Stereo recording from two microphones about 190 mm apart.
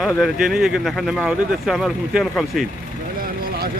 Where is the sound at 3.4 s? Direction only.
50° right (ahead or behind).